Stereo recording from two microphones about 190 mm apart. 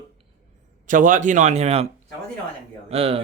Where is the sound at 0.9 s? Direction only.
45° right (ahead or behind).